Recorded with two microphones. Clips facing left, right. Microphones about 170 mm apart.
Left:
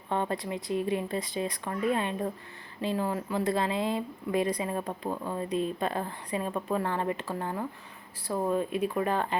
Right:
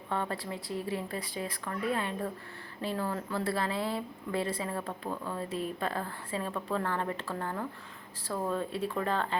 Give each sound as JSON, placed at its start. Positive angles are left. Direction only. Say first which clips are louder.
{"t": 0.1, "sound": "speech", "louder": "left 4 dB", "side_deg": 20}